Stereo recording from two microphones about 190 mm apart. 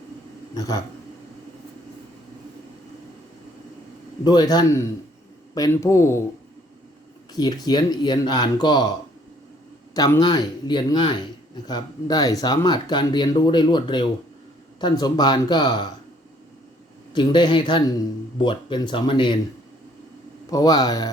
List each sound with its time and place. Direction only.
4.2 s speech: 20° left (ahead or behind)
7.3 s speech: 20° left (ahead or behind)
9.9 s speech: 20° left (ahead or behind)
17.2 s speech: 25° left (ahead or behind)
20.5 s speech: 20° left (ahead or behind)